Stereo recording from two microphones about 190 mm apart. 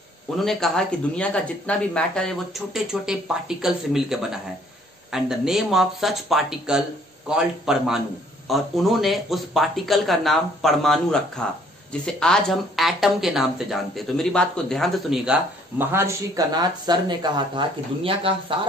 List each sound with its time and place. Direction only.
0.5 s speech: 5° left (ahead or behind)
15.8 s speech: 10° right (ahead or behind)